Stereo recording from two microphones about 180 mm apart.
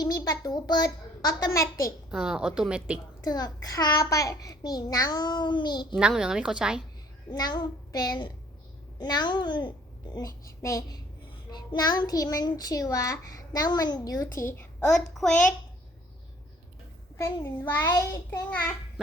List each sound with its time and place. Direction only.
0.0 s a child's voice: 20° left (ahead or behind)
2.0 s a woman's voice: 5° right (ahead or behind)
3.2 s a child's voice: 20° left (ahead or behind)
5.9 s a woman's voice: 5° right (ahead or behind)
7.3 s a child's voice: 25° left (ahead or behind); by 15.4 s centre (ahead or behind)
17.2 s a child's voice: 15° left (ahead or behind)